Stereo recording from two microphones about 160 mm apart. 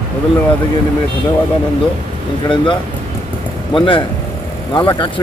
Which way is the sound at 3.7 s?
30° left (ahead or behind).